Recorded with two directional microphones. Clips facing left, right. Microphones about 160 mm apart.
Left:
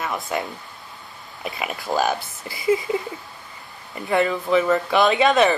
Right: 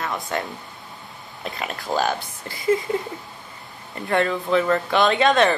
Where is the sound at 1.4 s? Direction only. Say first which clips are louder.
Left 1 dB; 5° left (ahead or behind).